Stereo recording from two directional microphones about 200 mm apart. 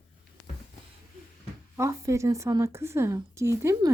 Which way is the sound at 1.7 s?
15° right (ahead or behind).